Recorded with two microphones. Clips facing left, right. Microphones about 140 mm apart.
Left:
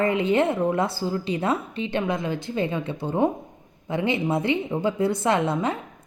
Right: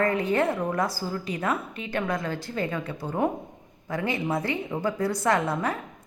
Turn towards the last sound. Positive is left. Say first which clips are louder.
# left 2 dB
turn(degrees=25)  # may be behind; listen again after turning